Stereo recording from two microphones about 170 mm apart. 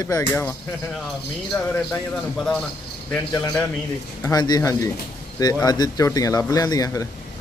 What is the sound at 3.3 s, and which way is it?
Speech, 20° left (ahead or behind).